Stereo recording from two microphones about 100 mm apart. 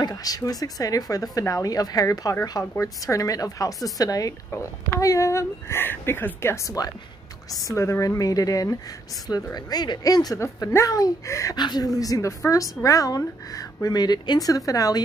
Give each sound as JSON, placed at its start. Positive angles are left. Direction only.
{"t": 0.0, "sound": "speech", "side_deg": 40}
{"t": 2.6, "sound": "speech", "side_deg": 30}
{"t": 11.5, "sound": "speech", "side_deg": 45}